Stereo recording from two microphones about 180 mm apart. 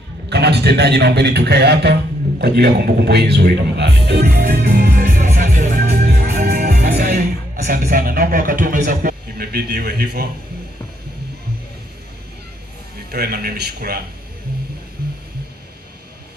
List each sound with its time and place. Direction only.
0.3 s a man's voice: 65° right (ahead or behind)
2.4 s music: 65° right (ahead or behind)
7.1 s speech: 50° right (ahead or behind)
8.8 s a man's voice: 55° right (ahead or behind)
13.1 s a man's voice: 60° right (ahead or behind)